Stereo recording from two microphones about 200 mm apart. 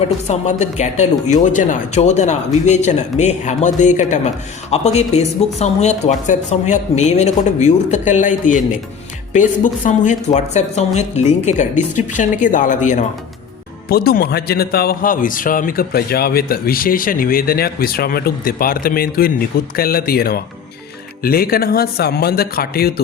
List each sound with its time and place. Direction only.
0.3 s speech: 35° left (ahead or behind)
13.9 s a man's voice: 50° left (ahead or behind)